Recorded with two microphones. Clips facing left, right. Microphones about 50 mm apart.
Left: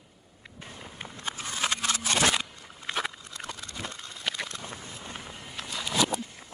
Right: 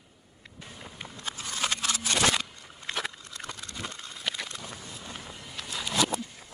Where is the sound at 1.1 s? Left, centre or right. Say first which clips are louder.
Left 2 dB; left.